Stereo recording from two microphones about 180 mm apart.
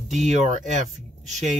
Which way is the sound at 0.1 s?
40° right (ahead or behind).